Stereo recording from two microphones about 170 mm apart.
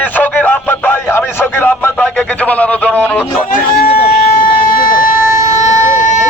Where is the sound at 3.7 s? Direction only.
60° left (ahead or behind).